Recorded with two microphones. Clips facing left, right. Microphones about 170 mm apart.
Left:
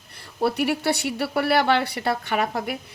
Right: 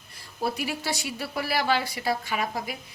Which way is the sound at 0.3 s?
65° left (ahead or behind).